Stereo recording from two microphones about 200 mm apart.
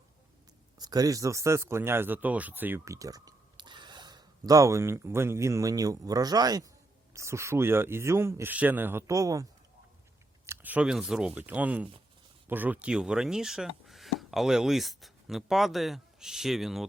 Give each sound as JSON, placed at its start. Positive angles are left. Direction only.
{"t": 0.8, "sound": "a man's voice", "side_deg": -20}